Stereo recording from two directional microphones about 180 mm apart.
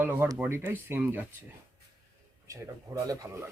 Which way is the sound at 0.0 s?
10° right (ahead or behind).